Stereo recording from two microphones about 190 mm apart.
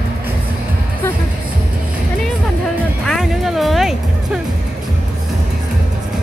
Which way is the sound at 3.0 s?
Centre (ahead or behind).